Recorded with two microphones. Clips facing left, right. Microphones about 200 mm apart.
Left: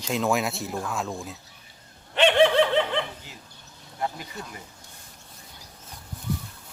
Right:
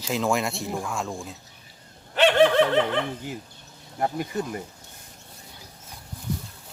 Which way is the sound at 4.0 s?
50° right (ahead or behind).